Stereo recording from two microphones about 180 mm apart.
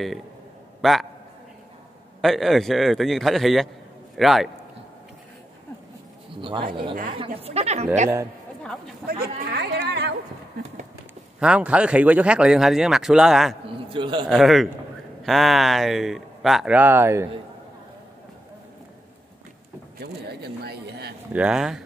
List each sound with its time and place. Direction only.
0.8 s speech: centre (ahead or behind)
2.2 s speech: centre (ahead or behind)
6.3 s speech: 30° right (ahead or behind)
9.0 s speech: 55° right (ahead or behind)
11.3 s speech: 5° right (ahead or behind)
13.8 s a man's voice: 25° right (ahead or behind)
14.3 s speech: centre (ahead or behind)
20.0 s speech: 60° right (ahead or behind)
21.3 s speech: 5° right (ahead or behind)